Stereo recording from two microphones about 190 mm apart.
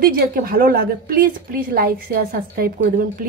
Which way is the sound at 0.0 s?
50° right (ahead or behind).